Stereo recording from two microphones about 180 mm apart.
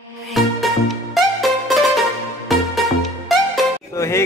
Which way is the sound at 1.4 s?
Centre (ahead or behind).